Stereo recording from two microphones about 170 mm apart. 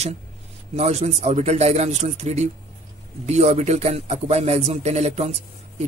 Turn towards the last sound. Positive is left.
turn(degrees=-40)  # may be behind; listen again after turning